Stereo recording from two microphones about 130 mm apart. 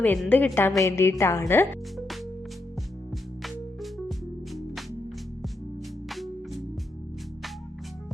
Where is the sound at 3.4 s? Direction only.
Centre (ahead or behind).